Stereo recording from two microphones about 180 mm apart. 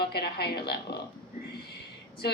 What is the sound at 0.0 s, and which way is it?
A woman's voice, 65° left (ahead or behind).